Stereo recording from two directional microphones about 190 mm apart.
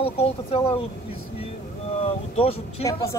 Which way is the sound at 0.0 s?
30° left (ahead or behind).